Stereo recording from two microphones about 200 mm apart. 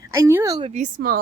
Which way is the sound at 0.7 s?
40° right (ahead or behind).